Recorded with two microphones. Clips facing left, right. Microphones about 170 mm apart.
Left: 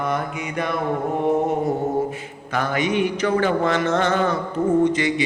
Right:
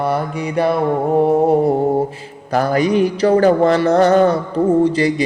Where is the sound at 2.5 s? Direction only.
35° right (ahead or behind).